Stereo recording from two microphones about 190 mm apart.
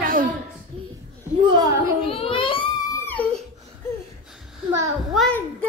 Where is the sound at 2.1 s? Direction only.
30° left (ahead or behind).